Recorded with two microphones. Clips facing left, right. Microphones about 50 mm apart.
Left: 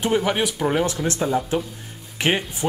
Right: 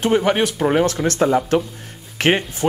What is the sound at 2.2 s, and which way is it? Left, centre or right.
Speech, right.